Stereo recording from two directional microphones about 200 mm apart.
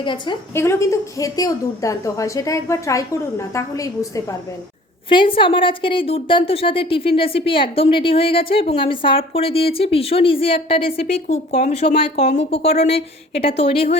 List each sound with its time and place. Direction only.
0.0 s a woman's voice: 25° left (ahead or behind)
0.5 s a woman's voice: 15° left (ahead or behind); by 13.9 s 30° left (ahead or behind)